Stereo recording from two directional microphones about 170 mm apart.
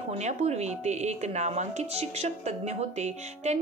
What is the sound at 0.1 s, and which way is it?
Speech, 40° right (ahead or behind).